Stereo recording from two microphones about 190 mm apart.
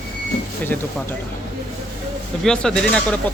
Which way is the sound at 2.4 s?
5° left (ahead or behind).